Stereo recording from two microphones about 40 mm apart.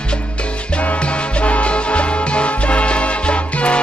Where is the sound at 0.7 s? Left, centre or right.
Left.